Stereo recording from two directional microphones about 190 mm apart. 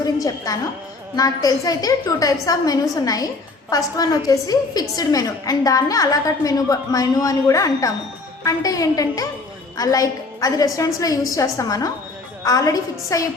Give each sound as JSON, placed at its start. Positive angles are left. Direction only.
{"t": 0.0, "sound": "a woman's voice", "side_deg": 20}